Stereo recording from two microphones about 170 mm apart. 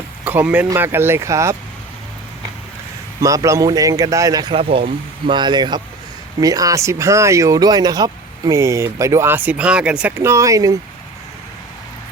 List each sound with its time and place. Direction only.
0.3 s speech: 10° right (ahead or behind)
3.2 s a man's voice: 20° right (ahead or behind)